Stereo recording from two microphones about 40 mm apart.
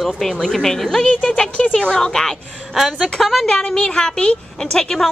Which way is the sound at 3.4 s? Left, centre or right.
Centre.